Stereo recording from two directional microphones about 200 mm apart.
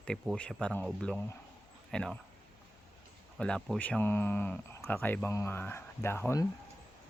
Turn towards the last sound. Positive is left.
turn(degrees=10)  # may be behind; listen again after turning